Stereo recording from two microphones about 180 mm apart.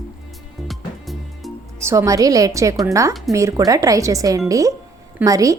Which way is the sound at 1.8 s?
15° right (ahead or behind).